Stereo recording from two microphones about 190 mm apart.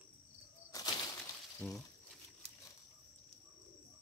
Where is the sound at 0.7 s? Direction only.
20° left (ahead or behind).